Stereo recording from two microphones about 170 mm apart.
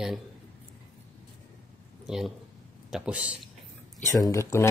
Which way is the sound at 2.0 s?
5° right (ahead or behind).